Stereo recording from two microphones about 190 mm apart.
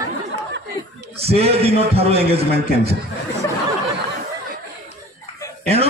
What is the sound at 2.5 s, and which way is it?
Speech, 55° right (ahead or behind).